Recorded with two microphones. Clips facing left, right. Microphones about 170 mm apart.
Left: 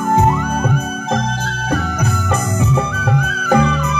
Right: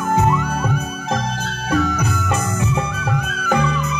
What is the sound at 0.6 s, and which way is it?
Music, 55° left (ahead or behind).